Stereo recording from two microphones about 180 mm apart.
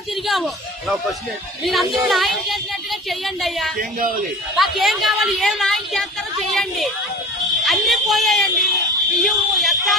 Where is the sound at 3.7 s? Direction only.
50° right (ahead or behind).